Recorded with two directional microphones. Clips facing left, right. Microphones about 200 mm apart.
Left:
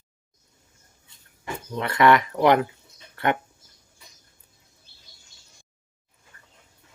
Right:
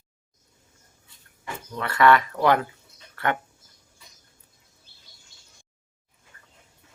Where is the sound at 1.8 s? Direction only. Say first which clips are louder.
Left 1 dB; 20° left (ahead or behind).